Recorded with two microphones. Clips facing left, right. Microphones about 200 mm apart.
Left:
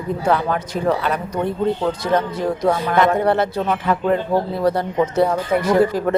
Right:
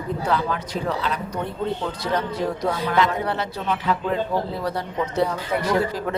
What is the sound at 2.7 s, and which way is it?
Speech, 50° left (ahead or behind).